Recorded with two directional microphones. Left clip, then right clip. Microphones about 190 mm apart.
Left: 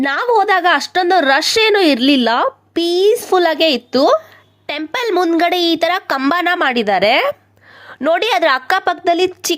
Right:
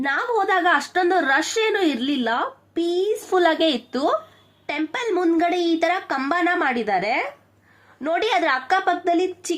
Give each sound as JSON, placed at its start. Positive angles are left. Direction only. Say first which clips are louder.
{"t": 0.0, "sound": "a woman's voice", "louder": "left 7 dB", "side_deg": 40}